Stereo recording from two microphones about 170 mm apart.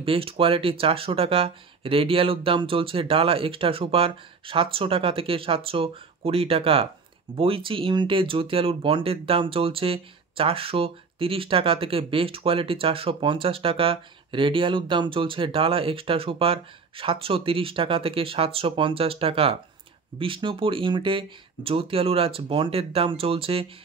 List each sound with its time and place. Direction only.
0.0 s speech: 30° right (ahead or behind)